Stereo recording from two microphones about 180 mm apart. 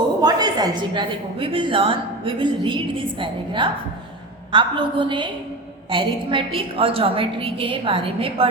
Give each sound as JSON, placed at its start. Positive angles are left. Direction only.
{"t": 0.2, "sound": "a woman's voice", "side_deg": -20}